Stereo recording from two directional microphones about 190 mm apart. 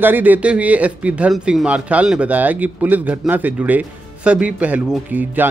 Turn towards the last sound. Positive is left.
turn(degrees=-10)  # may be behind; listen again after turning